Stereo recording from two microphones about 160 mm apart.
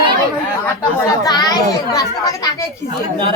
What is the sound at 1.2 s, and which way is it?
A child's voice, 25° left (ahead or behind).